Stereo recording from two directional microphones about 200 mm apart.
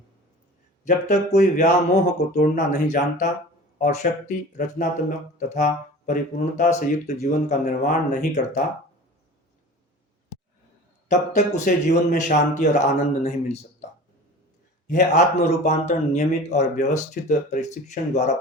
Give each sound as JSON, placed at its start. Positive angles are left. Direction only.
{"t": 0.9, "sound": "speech", "side_deg": 40}
{"t": 11.1, "sound": "speech", "side_deg": 35}
{"t": 14.8, "sound": "speech", "side_deg": 40}